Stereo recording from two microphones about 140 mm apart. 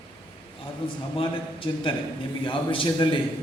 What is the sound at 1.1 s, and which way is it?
A man's voice, 40° left (ahead or behind).